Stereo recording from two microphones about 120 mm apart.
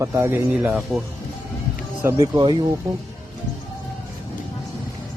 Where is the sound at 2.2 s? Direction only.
40° right (ahead or behind).